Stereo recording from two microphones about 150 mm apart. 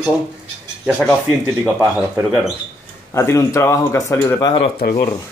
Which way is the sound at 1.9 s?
Centre (ahead or behind).